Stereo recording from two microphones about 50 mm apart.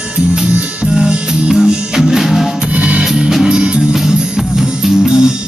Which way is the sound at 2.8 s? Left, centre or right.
Right.